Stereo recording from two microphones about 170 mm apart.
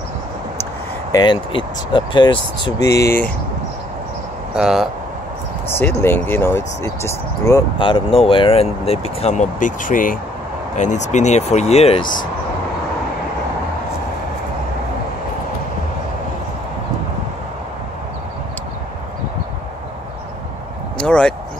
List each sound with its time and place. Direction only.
1.1 s speech: 25° left (ahead or behind)
3.0 s speech: 15° left (ahead or behind)
4.6 s speech: centre (ahead or behind)
5.7 s speech: 15° left (ahead or behind)
7.8 s speech: 30° left (ahead or behind)
21.0 s a sound: 5° left (ahead or behind)